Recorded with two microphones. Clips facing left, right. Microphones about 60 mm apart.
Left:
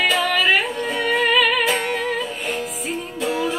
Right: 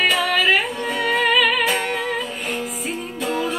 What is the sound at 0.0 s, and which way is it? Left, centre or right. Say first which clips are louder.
Music: even; centre.